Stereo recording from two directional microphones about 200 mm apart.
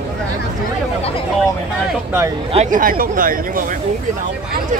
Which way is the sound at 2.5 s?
40° right (ahead or behind).